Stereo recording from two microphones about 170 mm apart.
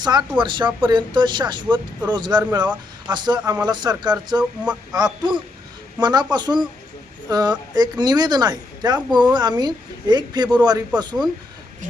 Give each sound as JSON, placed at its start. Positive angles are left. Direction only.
{"t": 0.0, "sound": "speech", "side_deg": -25}
{"t": 4.6, "sound": "speech", "side_deg": -5}
{"t": 4.9, "sound": "speech", "side_deg": -25}